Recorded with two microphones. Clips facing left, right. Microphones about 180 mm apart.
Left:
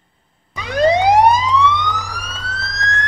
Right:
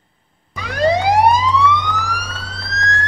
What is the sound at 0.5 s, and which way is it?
Police car, 20° left (ahead or behind).